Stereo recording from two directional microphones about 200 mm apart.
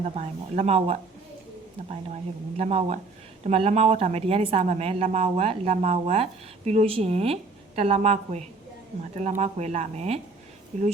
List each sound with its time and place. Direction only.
0.0 s speech: 35° right (ahead or behind)
2.6 s speech: 35° right (ahead or behind)